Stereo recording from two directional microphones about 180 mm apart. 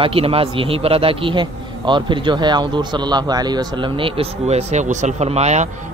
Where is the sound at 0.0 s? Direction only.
30° right (ahead or behind).